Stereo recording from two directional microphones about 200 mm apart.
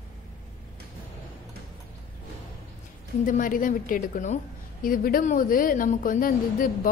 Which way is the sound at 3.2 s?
40° left (ahead or behind).